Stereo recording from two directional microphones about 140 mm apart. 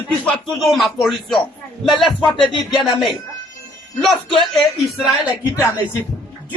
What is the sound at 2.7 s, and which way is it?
Speech, centre (ahead or behind).